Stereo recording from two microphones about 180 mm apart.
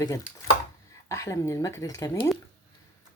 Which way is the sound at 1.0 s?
15° left (ahead or behind).